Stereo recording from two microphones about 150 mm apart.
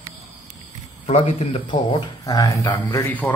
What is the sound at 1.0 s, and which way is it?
A man's voice, 40° left (ahead or behind).